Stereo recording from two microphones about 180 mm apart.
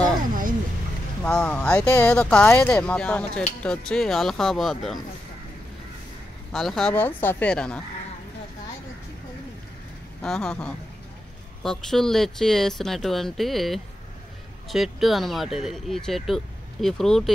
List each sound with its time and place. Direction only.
0.3 s a sound: 50° right (ahead or behind)
1.2 s speech: 5° left (ahead or behind)
6.5 s speech: centre (ahead or behind)
10.2 s speech: 5° left (ahead or behind)